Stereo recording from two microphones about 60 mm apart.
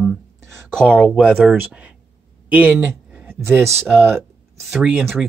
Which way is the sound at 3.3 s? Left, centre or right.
Right.